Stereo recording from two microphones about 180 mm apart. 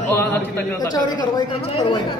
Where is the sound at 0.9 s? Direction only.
20° left (ahead or behind).